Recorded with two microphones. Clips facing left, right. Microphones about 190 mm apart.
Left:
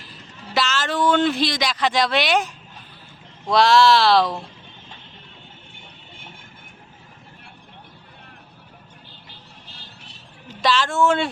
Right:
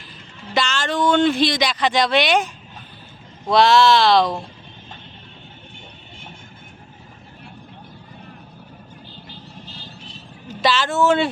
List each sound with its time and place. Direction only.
0.5 s speech: 5° left (ahead or behind)
3.5 s speech: centre (ahead or behind)
9.3 s vehicle: 60° left (ahead or behind)
10.6 s speech: 5° right (ahead or behind)